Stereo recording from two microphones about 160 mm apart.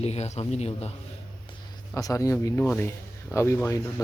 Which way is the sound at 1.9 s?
20° left (ahead or behind).